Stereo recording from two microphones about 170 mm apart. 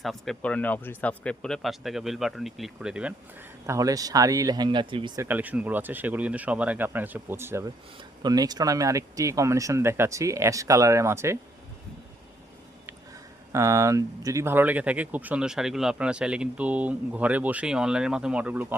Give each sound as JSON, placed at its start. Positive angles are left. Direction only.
{"t": 0.0, "sound": "speech", "side_deg": 0}
{"t": 3.7, "sound": "speech", "side_deg": -20}
{"t": 13.5, "sound": "speech", "side_deg": -15}